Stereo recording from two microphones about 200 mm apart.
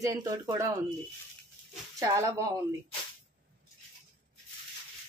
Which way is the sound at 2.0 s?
15° right (ahead or behind).